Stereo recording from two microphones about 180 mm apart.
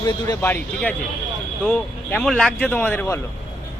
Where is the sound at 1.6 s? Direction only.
5° left (ahead or behind).